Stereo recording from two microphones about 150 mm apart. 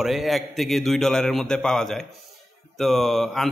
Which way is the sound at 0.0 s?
Centre (ahead or behind).